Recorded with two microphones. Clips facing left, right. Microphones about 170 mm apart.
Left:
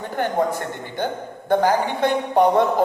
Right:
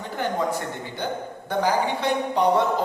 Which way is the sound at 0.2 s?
55° left (ahead or behind).